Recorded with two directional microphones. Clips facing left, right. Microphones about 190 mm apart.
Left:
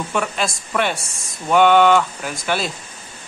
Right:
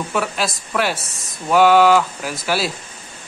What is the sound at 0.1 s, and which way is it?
Speech, 5° right (ahead or behind).